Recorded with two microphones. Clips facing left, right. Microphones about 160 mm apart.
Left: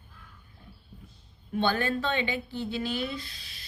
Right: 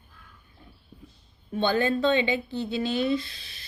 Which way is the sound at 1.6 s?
20° right (ahead or behind).